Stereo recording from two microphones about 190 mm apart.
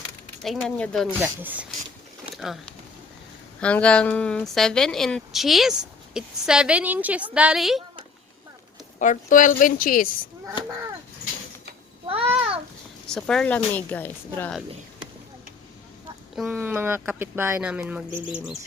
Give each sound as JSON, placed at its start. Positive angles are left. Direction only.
{"t": 0.4, "sound": "a woman's voice", "side_deg": 5}
{"t": 1.2, "sound": "a woman's voice", "side_deg": -10}
{"t": 9.0, "sound": "a woman's voice", "side_deg": 40}
{"t": 12.0, "sound": "babbling", "side_deg": -30}
{"t": 13.1, "sound": "a woman's voice", "side_deg": 5}
{"t": 16.3, "sound": "speech", "side_deg": -5}